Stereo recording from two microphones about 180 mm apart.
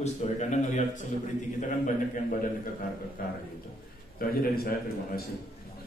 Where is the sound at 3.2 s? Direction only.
50° left (ahead or behind).